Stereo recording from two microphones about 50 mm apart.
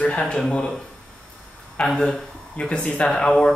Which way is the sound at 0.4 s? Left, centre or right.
Centre.